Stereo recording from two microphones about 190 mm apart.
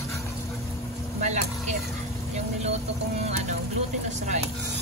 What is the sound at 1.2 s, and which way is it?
Vehicle, 40° right (ahead or behind).